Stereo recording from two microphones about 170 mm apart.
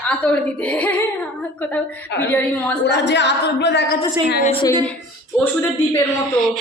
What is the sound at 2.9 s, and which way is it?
A man's voice, 90° left.